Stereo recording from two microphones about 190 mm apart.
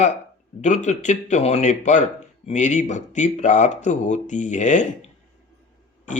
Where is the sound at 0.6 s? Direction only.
40° left (ahead or behind).